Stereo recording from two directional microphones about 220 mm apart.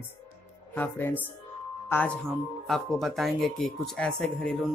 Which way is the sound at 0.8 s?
10° left (ahead or behind).